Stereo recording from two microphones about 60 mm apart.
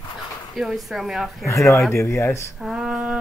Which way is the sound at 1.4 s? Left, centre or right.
Left.